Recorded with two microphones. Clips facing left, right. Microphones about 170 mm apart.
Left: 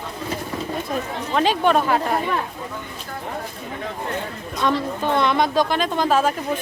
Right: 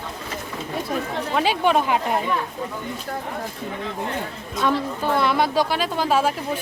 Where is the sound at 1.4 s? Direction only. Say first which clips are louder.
Left 2 dB; 10° right (ahead or behind).